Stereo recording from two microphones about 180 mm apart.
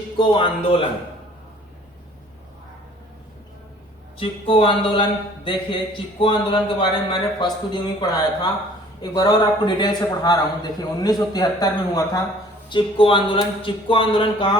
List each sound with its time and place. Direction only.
0.2 s speech: 25° left (ahead or behind)
4.2 s speech: 30° left (ahead or behind)